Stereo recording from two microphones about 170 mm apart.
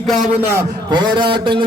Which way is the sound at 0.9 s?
25° right (ahead or behind).